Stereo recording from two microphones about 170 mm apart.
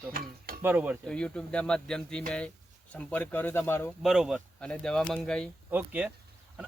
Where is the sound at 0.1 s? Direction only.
60° right (ahead or behind).